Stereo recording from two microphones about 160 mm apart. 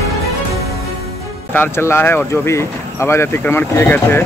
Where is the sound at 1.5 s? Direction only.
15° left (ahead or behind).